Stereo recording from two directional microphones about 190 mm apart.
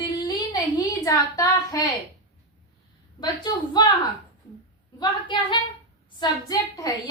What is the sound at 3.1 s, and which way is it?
Speech, 20° left (ahead or behind).